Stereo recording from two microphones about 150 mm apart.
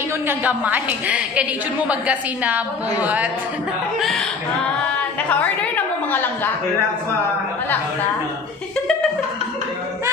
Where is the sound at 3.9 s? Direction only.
Centre (ahead or behind).